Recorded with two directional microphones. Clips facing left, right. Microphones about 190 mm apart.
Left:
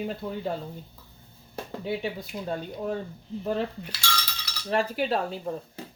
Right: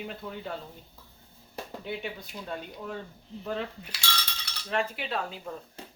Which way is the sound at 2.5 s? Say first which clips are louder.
Left 7 dB; 40° left (ahead or behind).